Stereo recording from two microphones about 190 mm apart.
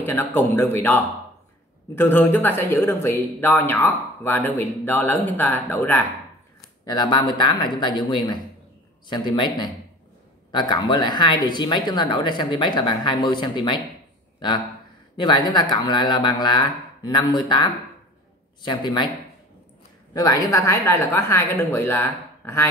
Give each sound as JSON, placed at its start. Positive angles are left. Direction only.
{"t": 0.0, "sound": "speech", "side_deg": 10}
{"t": 6.9, "sound": "speech", "side_deg": 20}
{"t": 10.7, "sound": "speech", "side_deg": 20}
{"t": 15.1, "sound": "speech", "side_deg": 25}
{"t": 20.2, "sound": "speech", "side_deg": 20}